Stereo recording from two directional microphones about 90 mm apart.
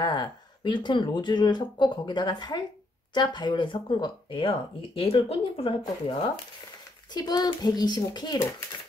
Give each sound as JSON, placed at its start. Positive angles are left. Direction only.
{"t": 0.0, "sound": "speech", "side_deg": 50}
{"t": 4.9, "sound": "speech", "side_deg": 90}
{"t": 7.2, "sound": "a child's voice", "side_deg": 50}